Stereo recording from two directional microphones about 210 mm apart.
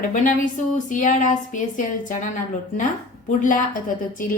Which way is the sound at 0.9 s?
35° left (ahead or behind).